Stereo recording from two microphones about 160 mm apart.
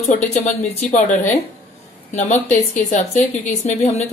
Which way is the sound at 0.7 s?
50° left (ahead or behind).